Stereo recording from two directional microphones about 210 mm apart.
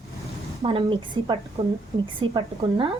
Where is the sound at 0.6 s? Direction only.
25° right (ahead or behind).